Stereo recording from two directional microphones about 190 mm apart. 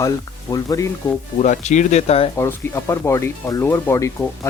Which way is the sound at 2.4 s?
15° left (ahead or behind).